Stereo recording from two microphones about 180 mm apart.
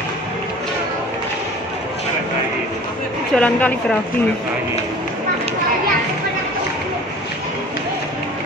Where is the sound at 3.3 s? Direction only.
5° left (ahead or behind).